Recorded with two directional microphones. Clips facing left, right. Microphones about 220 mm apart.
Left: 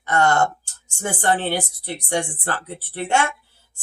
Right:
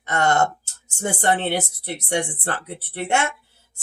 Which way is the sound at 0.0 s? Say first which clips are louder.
Left 1 dB; 25° right (ahead or behind).